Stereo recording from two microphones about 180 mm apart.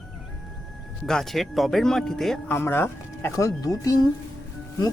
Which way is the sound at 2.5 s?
15° left (ahead or behind).